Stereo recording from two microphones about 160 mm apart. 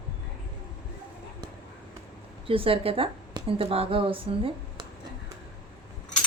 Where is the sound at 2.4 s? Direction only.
35° right (ahead or behind).